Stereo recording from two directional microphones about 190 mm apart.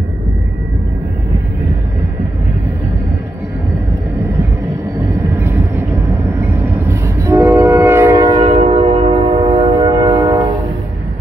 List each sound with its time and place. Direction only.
5.4 s vehicle: 15° right (ahead or behind)
6.5 s train: 15° right (ahead or behind)